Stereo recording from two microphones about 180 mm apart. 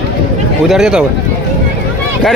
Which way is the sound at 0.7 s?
5° right (ahead or behind).